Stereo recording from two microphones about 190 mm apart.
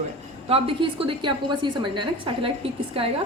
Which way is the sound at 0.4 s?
30° right (ahead or behind).